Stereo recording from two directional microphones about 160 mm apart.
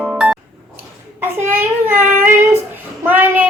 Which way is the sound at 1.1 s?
10° right (ahead or behind).